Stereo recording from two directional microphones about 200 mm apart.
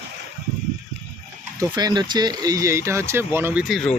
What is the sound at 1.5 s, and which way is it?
Speech, 20° right (ahead or behind).